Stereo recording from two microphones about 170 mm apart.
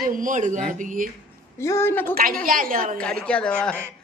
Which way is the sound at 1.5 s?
15° left (ahead or behind).